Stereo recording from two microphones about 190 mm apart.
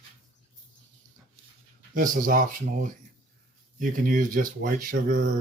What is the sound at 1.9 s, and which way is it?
Speech, 45° right (ahead or behind).